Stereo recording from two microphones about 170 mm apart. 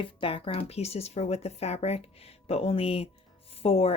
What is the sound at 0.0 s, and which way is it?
Speech, 30° left (ahead or behind).